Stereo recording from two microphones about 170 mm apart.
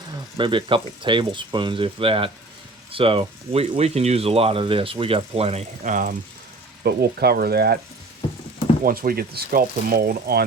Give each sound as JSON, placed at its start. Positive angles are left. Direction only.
{"t": 0.3, "sound": "speech", "side_deg": -30}
{"t": 6.8, "sound": "speech", "side_deg": -70}
{"t": 8.8, "sound": "speech", "side_deg": -55}